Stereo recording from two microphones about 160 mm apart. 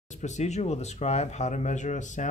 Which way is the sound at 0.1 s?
45° left (ahead or behind).